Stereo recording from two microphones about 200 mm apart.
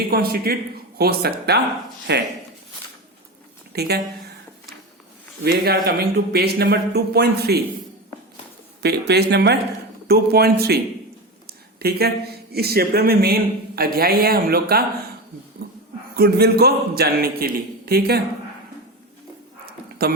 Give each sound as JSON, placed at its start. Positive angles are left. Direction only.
{"t": 0.1, "sound": "speech", "side_deg": -50}
{"t": 3.7, "sound": "speech", "side_deg": -50}
{"t": 5.4, "sound": "speech", "side_deg": -50}
{"t": 8.8, "sound": "speech", "side_deg": -55}
{"t": 16.1, "sound": "speech", "side_deg": -50}